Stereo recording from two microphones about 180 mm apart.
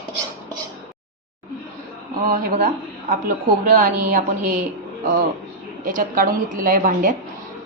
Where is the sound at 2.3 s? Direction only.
55° right (ahead or behind).